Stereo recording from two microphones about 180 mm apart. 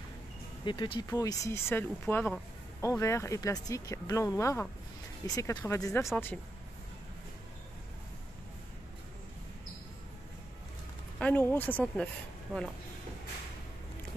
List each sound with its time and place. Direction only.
0.7 s speech: 25° left (ahead or behind); by 6.4 s 10° left (ahead or behind)
11.1 s speech: 10° left (ahead or behind)
12.5 s speech: centre (ahead or behind)